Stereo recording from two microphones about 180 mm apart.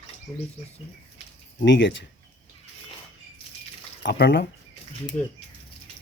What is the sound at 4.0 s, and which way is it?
Speech, 65° left (ahead or behind).